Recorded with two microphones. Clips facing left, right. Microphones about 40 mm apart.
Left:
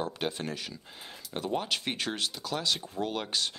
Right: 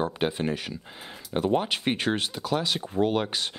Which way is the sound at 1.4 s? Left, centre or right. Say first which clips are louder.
Right 7 dB; right.